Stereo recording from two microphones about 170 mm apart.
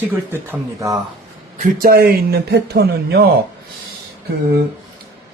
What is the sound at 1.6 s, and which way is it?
Speech, 60° right (ahead or behind).